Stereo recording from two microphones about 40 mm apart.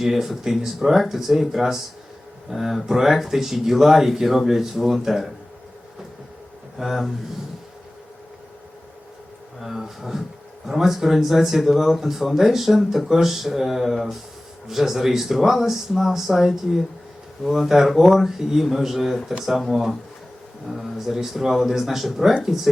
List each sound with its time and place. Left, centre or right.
0.0 s speech: centre
6.7 s speech: centre
9.6 s speech: centre
20.7 s speech: centre